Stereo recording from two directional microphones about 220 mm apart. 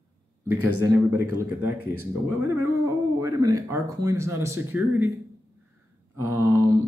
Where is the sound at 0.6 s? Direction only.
90° right.